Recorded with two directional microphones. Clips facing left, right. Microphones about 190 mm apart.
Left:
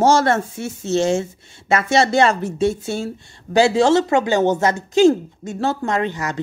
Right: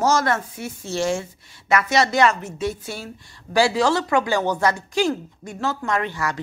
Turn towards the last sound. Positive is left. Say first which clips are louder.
# left 3 dB
turn(degrees=20)  # may be behind; listen again after turning